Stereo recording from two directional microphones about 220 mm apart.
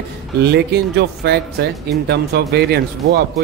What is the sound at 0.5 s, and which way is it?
Speech, 50° right (ahead or behind).